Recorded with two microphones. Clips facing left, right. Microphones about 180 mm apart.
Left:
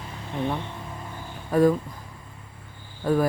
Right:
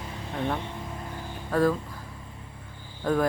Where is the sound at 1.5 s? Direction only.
15° left (ahead or behind).